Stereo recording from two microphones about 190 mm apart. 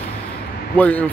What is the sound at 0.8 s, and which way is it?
Speech, 10° left (ahead or behind).